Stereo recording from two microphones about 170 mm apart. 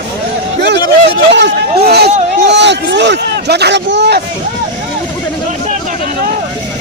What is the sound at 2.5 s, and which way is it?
Speech, 90° right.